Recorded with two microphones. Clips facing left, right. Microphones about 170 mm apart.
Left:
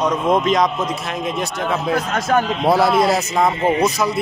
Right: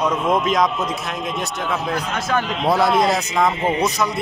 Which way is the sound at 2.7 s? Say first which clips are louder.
Left 2 dB; 5° left (ahead or behind).